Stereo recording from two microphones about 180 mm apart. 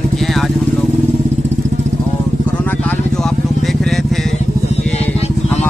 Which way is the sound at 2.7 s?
5° left (ahead or behind).